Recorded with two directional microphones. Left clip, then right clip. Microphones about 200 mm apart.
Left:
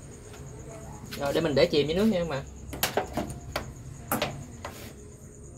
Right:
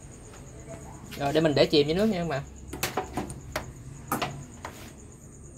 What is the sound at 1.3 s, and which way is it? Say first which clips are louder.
Speech: right 2 dB; 55° right (ahead or behind).